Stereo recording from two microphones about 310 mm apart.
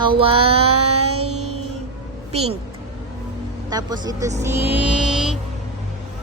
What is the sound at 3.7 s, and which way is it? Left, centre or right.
Speech, centre.